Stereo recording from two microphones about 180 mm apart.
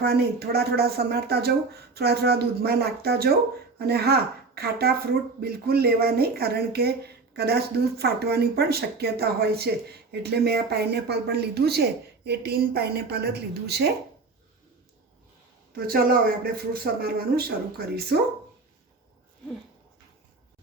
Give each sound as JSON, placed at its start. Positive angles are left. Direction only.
{"t": 0.0, "sound": "speech", "side_deg": -60}
{"t": 15.9, "sound": "speech", "side_deg": -55}